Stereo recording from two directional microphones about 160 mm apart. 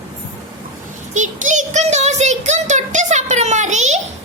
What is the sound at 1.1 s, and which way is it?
Child singing, 50° right (ahead or behind).